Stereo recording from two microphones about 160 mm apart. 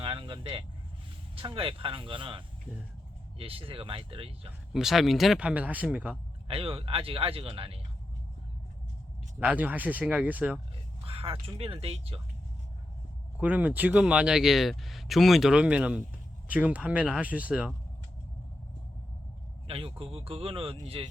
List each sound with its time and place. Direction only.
0.0 s vehicle: 30° right (ahead or behind)
1.4 s speech: 35° right (ahead or behind)
4.7 s speech: centre (ahead or behind)
6.5 s speech: 35° right (ahead or behind)
9.4 s speech: 10° right (ahead or behind)
11.0 s speech: 35° right (ahead or behind)
13.4 s speech: 10° right (ahead or behind)
19.6 s speech: 35° right (ahead or behind)